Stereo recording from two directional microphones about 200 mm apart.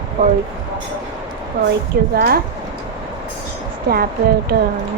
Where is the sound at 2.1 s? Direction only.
50° right (ahead or behind).